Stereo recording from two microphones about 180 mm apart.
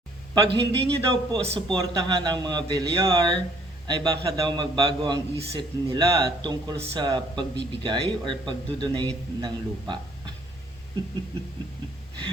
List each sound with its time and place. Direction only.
0.3 s a man's voice: 30° right (ahead or behind)